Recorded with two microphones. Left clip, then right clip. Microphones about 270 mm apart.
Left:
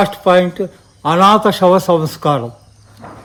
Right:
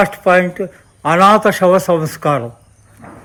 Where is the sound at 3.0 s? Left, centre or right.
Left.